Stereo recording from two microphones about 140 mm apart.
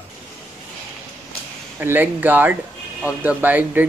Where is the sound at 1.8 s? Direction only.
15° right (ahead or behind).